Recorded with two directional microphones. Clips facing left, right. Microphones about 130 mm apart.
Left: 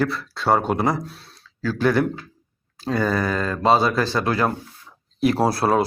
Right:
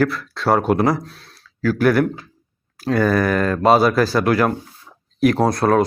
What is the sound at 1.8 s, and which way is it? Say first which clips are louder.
Speech: right 3 dB; 20° left (ahead or behind).